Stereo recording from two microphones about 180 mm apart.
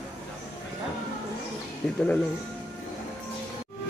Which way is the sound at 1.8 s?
5° left (ahead or behind).